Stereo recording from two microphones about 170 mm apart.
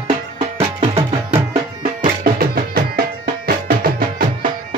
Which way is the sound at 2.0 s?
60° right (ahead or behind).